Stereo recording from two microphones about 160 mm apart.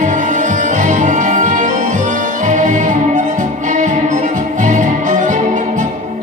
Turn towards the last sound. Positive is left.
turn(degrees=-55)  # may be behind; listen again after turning